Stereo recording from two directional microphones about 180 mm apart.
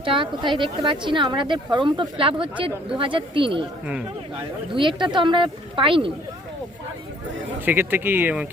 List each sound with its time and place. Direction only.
0.0 s a woman's voice: 30° right (ahead or behind)
7.6 s speech: 10° right (ahead or behind)